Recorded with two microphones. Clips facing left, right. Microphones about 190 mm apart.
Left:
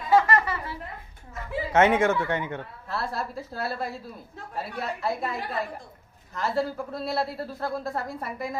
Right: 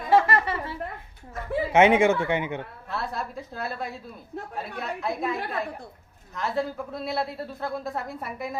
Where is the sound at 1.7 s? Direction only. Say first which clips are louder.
Right 2 dB; 15° right (ahead or behind).